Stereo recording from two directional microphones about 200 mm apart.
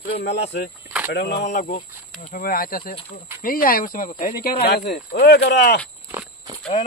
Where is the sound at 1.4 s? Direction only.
40° left (ahead or behind).